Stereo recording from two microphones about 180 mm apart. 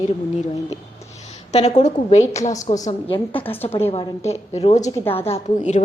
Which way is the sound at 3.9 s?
35° left (ahead or behind).